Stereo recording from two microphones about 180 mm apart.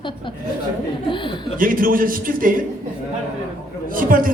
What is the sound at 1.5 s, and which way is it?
A man's voice, 50° right (ahead or behind).